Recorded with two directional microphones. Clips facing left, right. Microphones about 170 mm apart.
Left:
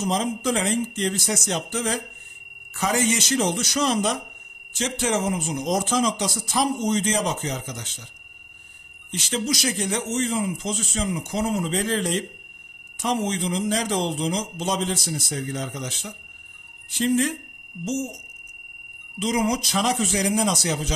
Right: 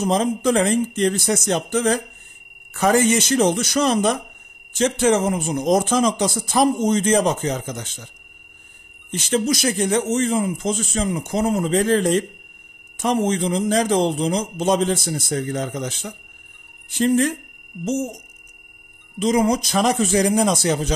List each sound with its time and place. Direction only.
0.0 s a man's voice: 55° right (ahead or behind)
9.1 s a man's voice: 50° right (ahead or behind)
19.1 s a man's voice: 50° right (ahead or behind)